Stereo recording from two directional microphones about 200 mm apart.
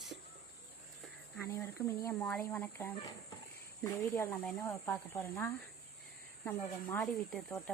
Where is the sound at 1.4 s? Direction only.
15° left (ahead or behind).